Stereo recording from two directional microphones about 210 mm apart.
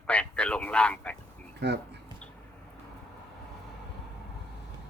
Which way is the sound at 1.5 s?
50° right (ahead or behind).